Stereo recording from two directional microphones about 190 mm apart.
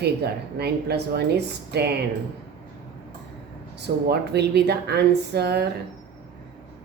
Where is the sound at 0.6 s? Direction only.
60° right (ahead or behind).